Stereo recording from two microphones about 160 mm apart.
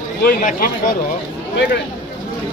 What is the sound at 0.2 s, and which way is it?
Speech, 65° left (ahead or behind).